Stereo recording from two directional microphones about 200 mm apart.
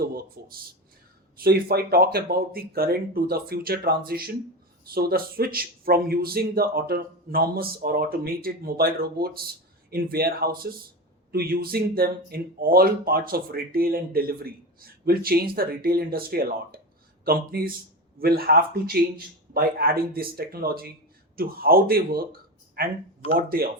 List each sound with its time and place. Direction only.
0.0 s speech: 50° right (ahead or behind)